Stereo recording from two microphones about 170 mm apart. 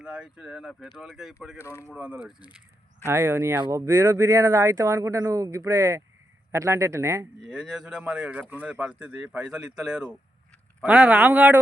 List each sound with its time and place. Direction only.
0.0 s speech: 5° right (ahead or behind)
1.6 s speech: 15° left (ahead or behind)
1.9 s speech: 5° right (ahead or behind)
3.0 s speech: 15° right (ahead or behind)
7.4 s speech: 5° right (ahead or behind)